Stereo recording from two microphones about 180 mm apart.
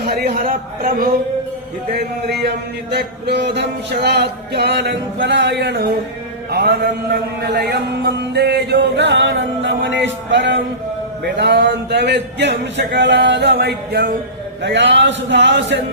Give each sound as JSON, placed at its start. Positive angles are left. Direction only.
{"t": 0.0, "sound": "a man's voice", "side_deg": -55}
{"t": 1.9, "sound": "mantra", "side_deg": -65}
{"t": 6.5, "sound": "a man's voice", "side_deg": -60}
{"t": 8.2, "sound": "mantra", "side_deg": -65}
{"t": 14.6, "sound": "a man's voice", "side_deg": -80}